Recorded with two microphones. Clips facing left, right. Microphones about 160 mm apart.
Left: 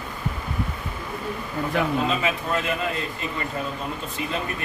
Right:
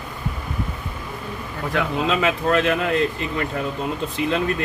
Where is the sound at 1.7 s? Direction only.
90° right.